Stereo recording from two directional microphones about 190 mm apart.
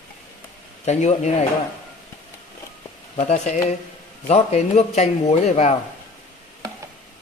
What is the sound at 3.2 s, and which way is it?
A man's voice, 40° left (ahead or behind).